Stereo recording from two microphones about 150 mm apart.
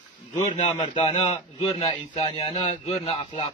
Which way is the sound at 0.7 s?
30° left (ahead or behind).